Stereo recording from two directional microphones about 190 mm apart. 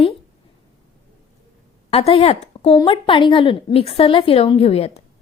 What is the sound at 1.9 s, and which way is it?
A woman's voice, 30° left (ahead or behind).